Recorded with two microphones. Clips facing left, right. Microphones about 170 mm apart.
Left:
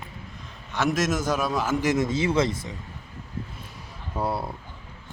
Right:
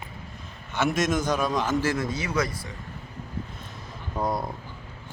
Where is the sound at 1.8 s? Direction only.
20° left (ahead or behind).